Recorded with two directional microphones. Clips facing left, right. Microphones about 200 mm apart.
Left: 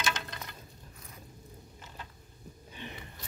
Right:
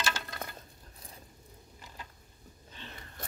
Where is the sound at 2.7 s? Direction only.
15° left (ahead or behind).